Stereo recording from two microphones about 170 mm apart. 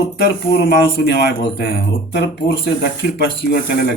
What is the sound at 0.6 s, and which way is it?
Speech, 70° left (ahead or behind).